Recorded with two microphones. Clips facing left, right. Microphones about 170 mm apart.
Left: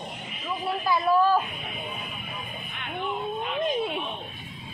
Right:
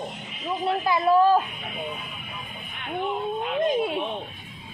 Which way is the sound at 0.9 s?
20° right (ahead or behind).